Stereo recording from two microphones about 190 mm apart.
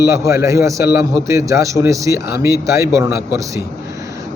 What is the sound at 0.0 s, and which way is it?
A man's voice, 15° right (ahead or behind).